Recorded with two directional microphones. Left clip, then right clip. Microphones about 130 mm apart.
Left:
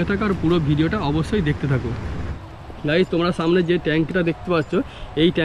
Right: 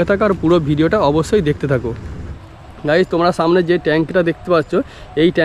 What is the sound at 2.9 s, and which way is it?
Speech, 35° right (ahead or behind).